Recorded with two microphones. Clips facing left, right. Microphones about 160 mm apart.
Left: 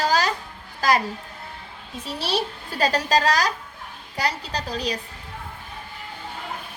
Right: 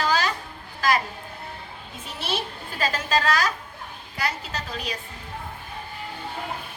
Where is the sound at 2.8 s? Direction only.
35° left (ahead or behind).